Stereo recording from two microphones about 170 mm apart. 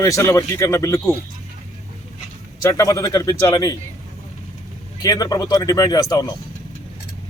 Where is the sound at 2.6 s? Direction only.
20° left (ahead or behind).